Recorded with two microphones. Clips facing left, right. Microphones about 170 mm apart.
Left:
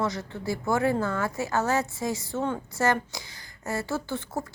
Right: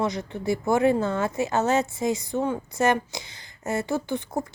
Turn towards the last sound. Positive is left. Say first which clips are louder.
# right 4 dB
turn(degrees=-15)  # may be behind; listen again after turning